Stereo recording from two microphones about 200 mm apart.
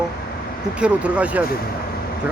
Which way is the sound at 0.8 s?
5° right (ahead or behind).